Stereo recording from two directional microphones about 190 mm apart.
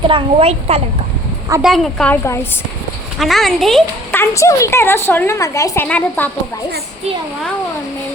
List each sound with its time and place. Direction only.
0.1 s speech: 30° right (ahead or behind)
1.6 s a woman's voice: centre (ahead or behind)
3.2 s a woman's voice: centre (ahead or behind)